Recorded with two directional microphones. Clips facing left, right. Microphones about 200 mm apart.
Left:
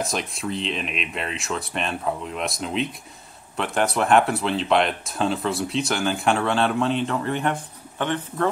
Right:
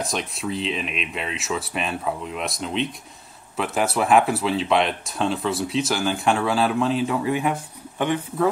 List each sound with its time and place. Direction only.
0.0 s speech: centre (ahead or behind)